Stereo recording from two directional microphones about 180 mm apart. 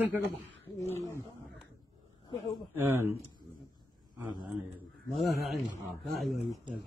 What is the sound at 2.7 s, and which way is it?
Speech, 10° right (ahead or behind).